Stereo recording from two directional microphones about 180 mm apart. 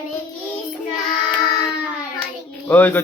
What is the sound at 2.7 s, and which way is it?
Speech, 10° left (ahead or behind).